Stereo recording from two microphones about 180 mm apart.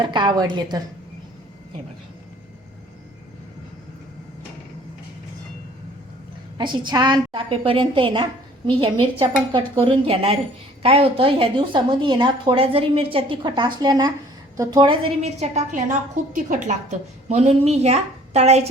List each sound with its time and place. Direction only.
0.0 s a woman's voice: 25° right (ahead or behind)
6.6 s a woman's voice: 25° right (ahead or behind)
15.2 s a woman's voice: 40° right (ahead or behind)